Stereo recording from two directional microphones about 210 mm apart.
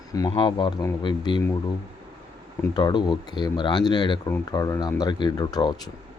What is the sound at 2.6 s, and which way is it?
Speech, 20° left (ahead or behind).